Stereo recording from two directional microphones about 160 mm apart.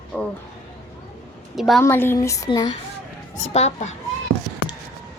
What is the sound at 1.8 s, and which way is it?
Speech, 15° left (ahead or behind).